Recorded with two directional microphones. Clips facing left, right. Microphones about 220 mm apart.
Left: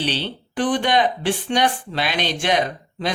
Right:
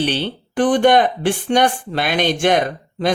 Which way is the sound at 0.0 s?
50° right (ahead or behind).